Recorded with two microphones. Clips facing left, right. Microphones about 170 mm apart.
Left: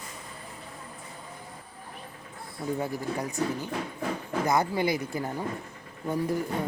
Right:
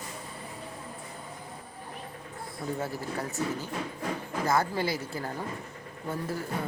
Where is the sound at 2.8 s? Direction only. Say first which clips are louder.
Left 3 dB; 15° left (ahead or behind).